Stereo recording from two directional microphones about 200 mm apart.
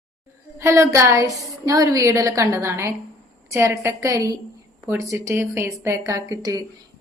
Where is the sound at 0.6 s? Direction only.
15° right (ahead or behind).